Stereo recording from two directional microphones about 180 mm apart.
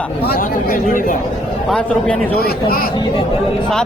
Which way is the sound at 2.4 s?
55° left (ahead or behind).